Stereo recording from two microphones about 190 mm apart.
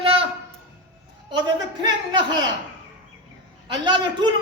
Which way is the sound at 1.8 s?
25° right (ahead or behind).